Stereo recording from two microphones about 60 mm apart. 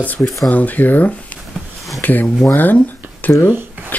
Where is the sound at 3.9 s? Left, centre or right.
Left.